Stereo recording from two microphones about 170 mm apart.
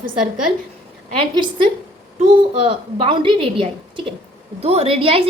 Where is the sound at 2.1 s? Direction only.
35° right (ahead or behind).